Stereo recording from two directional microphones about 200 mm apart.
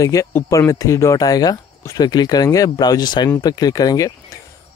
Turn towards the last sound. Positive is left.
turn(degrees=15)  # may be behind; listen again after turning